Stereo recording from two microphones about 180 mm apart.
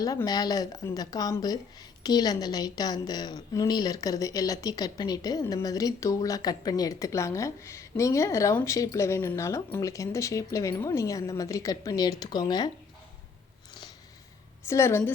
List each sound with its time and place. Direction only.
0.0 s a woman's voice: 20° left (ahead or behind)
14.7 s a woman's voice: 15° left (ahead or behind)